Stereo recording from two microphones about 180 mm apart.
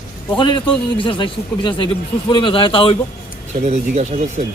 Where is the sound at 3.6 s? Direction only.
40° right (ahead or behind).